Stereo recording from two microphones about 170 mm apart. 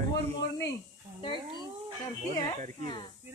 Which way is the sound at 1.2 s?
30° left (ahead or behind).